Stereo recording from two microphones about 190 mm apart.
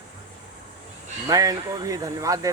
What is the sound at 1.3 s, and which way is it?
Speech, 20° right (ahead or behind).